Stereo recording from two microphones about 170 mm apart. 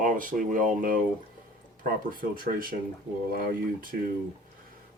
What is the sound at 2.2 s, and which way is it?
Speech, 55° right (ahead or behind).